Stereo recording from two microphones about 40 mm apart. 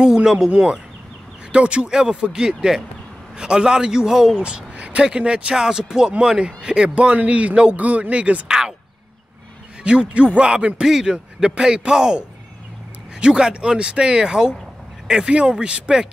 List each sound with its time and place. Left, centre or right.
0.0 s a man's voice: centre
1.5 s speech: right
1.9 s a man's voice: centre
4.4 s speech: right
7.2 s speech: right
8.5 s a man's voice: centre
9.8 s speech: right
10.8 s a man's voice: centre